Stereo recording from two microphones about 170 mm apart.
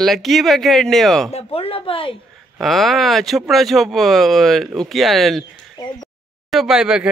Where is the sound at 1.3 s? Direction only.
35° left (ahead or behind).